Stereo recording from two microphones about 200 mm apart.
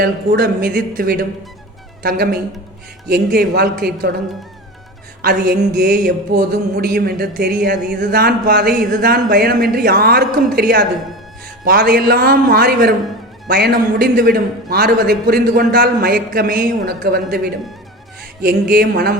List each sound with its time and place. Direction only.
0.0 s a man's voice: 50° right (ahead or behind)
5.2 s a man's voice: 55° right (ahead or behind)